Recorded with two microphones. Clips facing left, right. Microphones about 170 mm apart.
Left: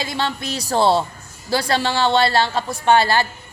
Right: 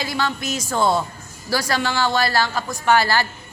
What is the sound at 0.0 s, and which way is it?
A woman's voice, 25° left (ahead or behind).